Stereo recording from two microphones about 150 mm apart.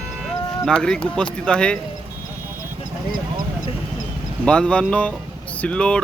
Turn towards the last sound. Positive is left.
turn(degrees=5)  # may be behind; listen again after turning